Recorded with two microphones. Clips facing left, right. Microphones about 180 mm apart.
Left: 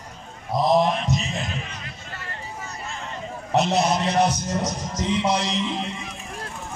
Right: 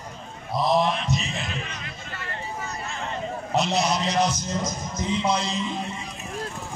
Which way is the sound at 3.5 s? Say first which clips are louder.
Left 3 dB; 50° left (ahead or behind).